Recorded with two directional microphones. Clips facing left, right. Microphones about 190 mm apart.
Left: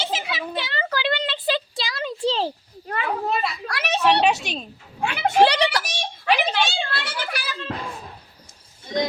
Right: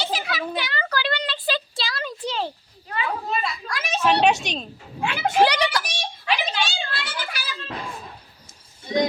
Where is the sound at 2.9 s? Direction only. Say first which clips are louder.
Left 2 dB; 60° left (ahead or behind).